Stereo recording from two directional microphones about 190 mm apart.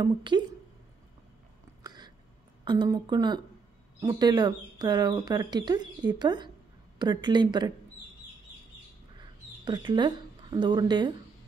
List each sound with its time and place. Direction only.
0.0 s speech: 25° right (ahead or behind)
1.8 s a sound: 20° right (ahead or behind)
2.6 s speech: 20° right (ahead or behind)
9.7 s speech: 25° right (ahead or behind)